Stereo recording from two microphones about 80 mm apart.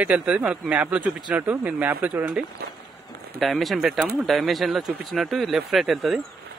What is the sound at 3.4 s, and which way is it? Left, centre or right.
Speech, centre.